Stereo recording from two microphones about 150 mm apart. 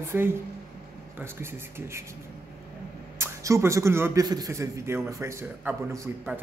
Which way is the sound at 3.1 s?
20° right (ahead or behind).